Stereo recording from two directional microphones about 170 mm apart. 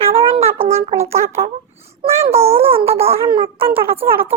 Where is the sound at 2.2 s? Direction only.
35° right (ahead or behind).